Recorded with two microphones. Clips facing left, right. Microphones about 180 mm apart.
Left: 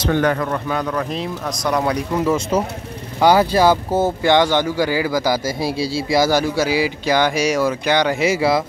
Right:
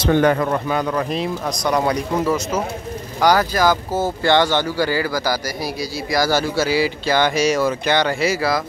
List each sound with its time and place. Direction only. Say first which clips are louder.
0.1 s a man's voice: right 3 dB; 20° right (ahead or behind)
0.7 s speech: right 1 dB; 10° right (ahead or behind)
2.2 s speech: left 2 dB; 30° left (ahead or behind)
4.2 s a man's voice: right 1 dB; 15° left (ahead or behind)